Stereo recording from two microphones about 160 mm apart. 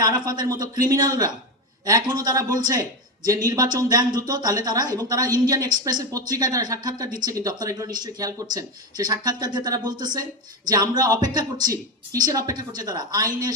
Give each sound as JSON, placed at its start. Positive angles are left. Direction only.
{"t": 0.0, "sound": "speech", "side_deg": -25}